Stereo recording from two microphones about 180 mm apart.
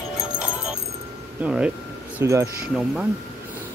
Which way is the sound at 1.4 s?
5° right (ahead or behind).